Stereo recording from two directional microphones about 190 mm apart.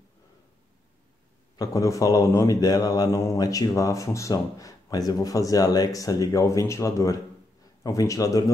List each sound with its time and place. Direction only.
1.6 s speech: 15° left (ahead or behind)